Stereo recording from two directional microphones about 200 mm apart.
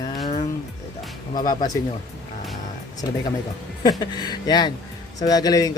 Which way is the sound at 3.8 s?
20° left (ahead or behind).